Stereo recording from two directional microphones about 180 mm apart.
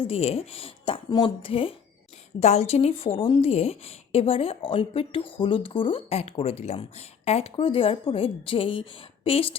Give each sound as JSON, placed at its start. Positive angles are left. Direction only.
{"t": 0.0, "sound": "a woman's voice", "side_deg": 35}